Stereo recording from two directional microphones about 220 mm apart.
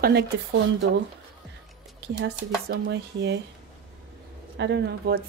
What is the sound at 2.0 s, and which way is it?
Speech, 50° right (ahead or behind).